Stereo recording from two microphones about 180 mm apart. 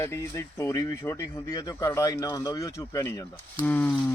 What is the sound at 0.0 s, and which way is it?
Speech, 15° left (ahead or behind).